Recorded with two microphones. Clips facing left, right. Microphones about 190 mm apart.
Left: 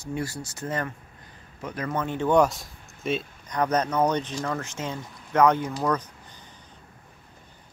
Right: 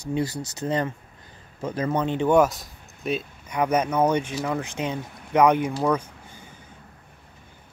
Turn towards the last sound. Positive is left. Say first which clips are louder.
# right 3 dB
turn(degrees=-10)  # may be behind; listen again after turning